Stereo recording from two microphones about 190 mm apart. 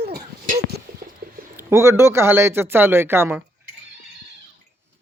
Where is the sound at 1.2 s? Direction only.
50° right (ahead or behind).